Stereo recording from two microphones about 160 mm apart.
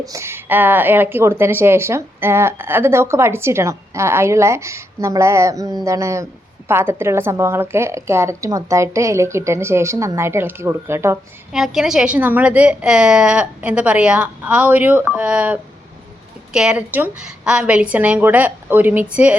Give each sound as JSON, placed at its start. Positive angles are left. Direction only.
{"t": 0.0, "sound": "speech", "side_deg": -20}
{"t": 11.5, "sound": "speech", "side_deg": -5}